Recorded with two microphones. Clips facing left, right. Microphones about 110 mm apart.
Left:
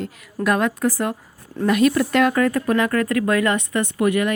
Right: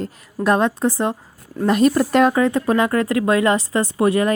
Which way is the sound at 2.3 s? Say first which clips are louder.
Right 2 dB; 20° right (ahead or behind).